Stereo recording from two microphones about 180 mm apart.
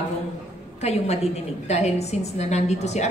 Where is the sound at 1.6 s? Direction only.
35° left (ahead or behind).